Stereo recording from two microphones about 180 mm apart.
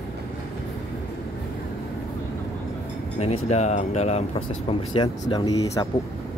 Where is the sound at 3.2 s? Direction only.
35° left (ahead or behind).